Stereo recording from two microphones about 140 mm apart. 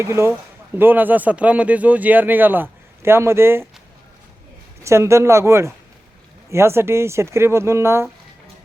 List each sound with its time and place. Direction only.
0.0 s speech: 20° right (ahead or behind)
4.8 s speech: 20° right (ahead or behind)